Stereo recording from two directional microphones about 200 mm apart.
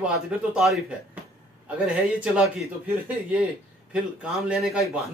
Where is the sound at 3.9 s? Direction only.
5° right (ahead or behind).